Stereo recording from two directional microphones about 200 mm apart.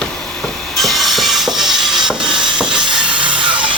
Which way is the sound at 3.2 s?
25° right (ahead or behind).